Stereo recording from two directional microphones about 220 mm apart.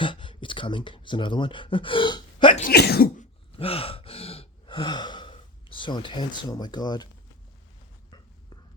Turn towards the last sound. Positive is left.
turn(degrees=20)  # may be behind; listen again after turning